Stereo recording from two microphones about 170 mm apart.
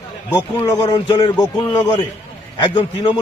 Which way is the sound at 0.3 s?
20° left (ahead or behind).